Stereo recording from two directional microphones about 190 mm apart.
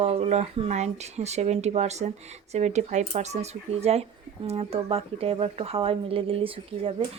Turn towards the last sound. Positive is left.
turn(degrees=-30)  # may be behind; listen again after turning